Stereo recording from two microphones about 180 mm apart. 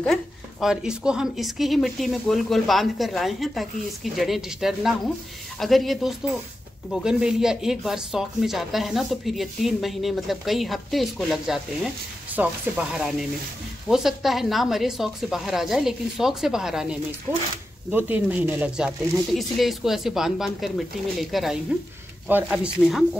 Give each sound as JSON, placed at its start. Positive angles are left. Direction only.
{"t": 0.0, "sound": "speech", "side_deg": 0}